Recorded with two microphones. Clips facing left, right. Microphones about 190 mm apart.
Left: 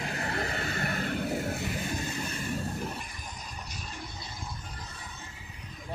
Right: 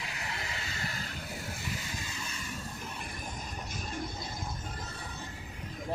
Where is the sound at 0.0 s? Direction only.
55° left (ahead or behind).